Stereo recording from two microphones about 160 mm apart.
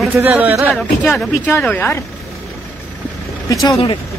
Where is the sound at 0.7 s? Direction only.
Centre (ahead or behind).